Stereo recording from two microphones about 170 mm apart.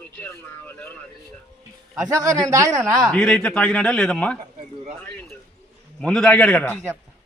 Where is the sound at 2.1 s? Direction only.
20° right (ahead or behind).